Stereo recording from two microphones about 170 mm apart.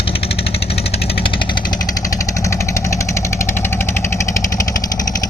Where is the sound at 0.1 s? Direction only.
35° left (ahead or behind).